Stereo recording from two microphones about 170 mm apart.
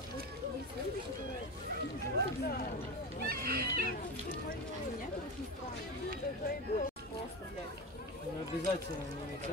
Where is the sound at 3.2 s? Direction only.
60° right (ahead or behind).